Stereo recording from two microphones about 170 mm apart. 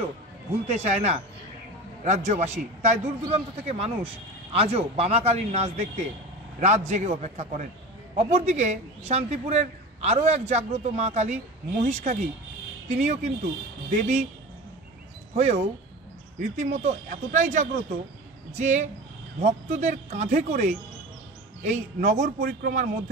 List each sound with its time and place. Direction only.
0.7 s speech: 40° right (ahead or behind)
15.3 s speech: 40° right (ahead or behind)